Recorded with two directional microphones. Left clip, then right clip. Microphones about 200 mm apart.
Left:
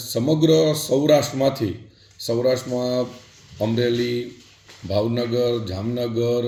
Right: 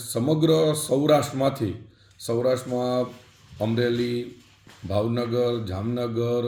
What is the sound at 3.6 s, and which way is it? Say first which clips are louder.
A man's voice: left 3 dB; 5° left (ahead or behind).